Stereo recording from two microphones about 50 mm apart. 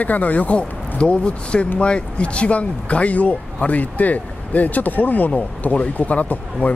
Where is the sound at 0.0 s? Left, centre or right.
Left.